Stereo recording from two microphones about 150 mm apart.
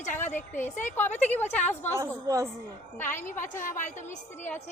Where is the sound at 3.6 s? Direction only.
60° left (ahead or behind).